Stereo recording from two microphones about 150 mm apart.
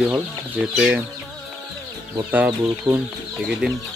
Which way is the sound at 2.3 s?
10° right (ahead or behind).